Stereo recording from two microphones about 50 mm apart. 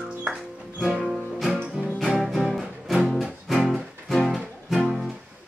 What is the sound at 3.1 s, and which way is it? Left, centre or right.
Music, centre.